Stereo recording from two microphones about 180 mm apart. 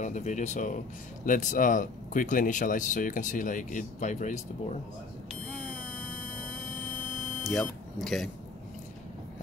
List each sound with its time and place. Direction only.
0.0 s speech: 45° left (ahead or behind)
7.4 s speech: centre (ahead or behind)